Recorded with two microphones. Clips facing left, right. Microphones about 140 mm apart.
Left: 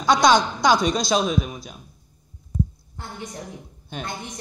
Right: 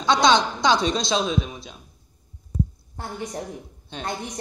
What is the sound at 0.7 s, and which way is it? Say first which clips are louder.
Speech: left 1 dB; 25° right (ahead or behind).